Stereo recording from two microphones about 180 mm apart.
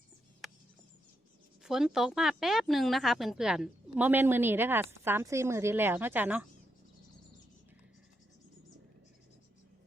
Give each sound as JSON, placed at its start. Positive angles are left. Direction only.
{"t": 1.6, "sound": "speech", "side_deg": 0}